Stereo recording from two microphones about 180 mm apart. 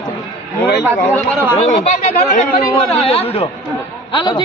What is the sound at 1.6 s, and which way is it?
Speech, 35° left (ahead or behind).